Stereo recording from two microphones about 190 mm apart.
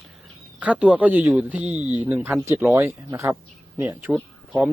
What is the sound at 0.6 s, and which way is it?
A man's voice, 5° right (ahead or behind).